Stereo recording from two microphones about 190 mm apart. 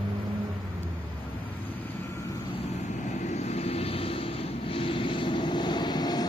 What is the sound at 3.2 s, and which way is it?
Vehicle, 35° left (ahead or behind).